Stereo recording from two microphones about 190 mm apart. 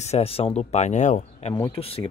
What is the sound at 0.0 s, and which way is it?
Speech, 35° left (ahead or behind).